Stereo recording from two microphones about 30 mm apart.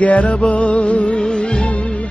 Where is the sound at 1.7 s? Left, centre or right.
Left.